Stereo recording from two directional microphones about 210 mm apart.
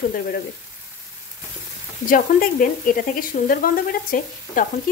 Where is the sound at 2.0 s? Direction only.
40° left (ahead or behind).